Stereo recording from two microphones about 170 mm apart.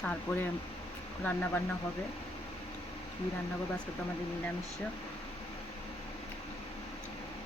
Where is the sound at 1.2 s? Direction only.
10° left (ahead or behind).